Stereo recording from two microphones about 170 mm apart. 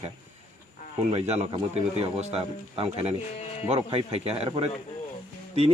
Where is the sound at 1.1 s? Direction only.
40° right (ahead or behind).